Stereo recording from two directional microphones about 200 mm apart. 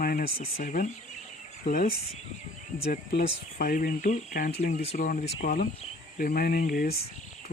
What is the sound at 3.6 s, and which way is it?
Speech, 45° left (ahead or behind).